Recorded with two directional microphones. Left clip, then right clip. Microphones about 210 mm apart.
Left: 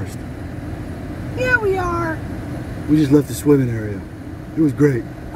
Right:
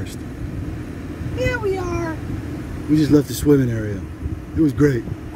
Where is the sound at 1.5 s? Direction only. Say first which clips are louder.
Left 8 dB; 50° left (ahead or behind).